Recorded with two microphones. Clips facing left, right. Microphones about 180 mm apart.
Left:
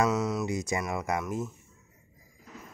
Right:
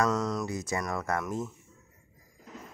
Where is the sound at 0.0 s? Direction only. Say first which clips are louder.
Left 1 dB; 5° left (ahead or behind).